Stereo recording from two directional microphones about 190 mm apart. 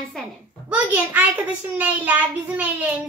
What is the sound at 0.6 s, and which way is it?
Speech, 10° right (ahead or behind).